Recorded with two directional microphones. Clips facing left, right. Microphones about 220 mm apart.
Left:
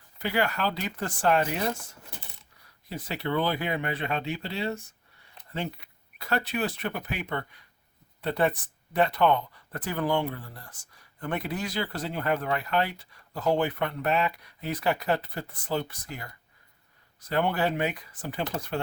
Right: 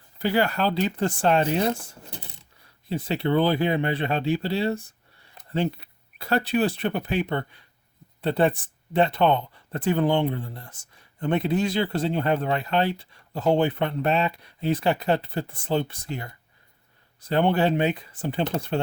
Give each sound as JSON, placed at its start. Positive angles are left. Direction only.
{"t": 0.2, "sound": "speech", "side_deg": -30}